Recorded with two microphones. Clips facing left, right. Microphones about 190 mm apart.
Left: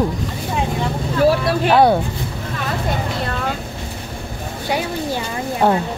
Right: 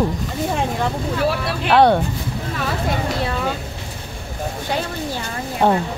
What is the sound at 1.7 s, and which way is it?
Speech, 10° left (ahead or behind).